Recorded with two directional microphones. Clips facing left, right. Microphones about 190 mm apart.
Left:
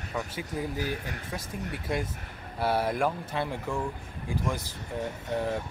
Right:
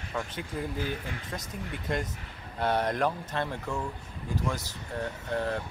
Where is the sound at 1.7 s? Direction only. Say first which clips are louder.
Even; 5° left (ahead or behind).